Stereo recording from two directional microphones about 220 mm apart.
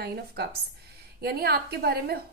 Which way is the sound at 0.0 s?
45° right (ahead or behind).